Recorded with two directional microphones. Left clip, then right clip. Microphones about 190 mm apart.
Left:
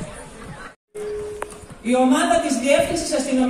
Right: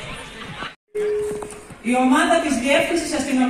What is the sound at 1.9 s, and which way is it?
Speech, 60° left (ahead or behind).